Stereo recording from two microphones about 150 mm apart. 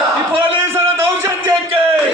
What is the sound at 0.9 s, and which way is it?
Music, 15° right (ahead or behind).